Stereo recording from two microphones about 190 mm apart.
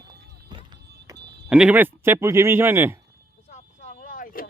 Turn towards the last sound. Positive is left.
turn(degrees=45)  # may be behind; listen again after turning